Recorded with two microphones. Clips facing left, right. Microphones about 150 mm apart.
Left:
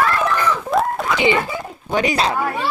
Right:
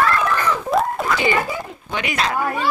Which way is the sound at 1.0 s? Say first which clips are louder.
Even; centre (ahead or behind).